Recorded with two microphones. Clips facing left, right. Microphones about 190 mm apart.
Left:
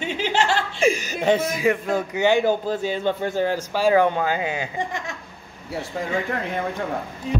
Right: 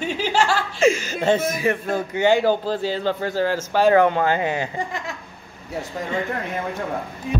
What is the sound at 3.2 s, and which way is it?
Speech, 20° left (ahead or behind).